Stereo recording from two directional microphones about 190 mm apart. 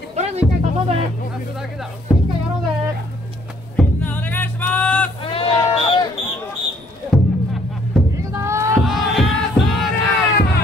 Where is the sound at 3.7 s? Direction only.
10° left (ahead or behind).